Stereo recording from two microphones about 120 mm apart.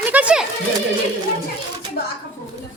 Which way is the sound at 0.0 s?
10° right (ahead or behind).